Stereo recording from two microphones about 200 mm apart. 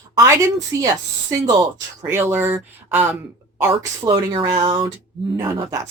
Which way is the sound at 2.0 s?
10° right (ahead or behind).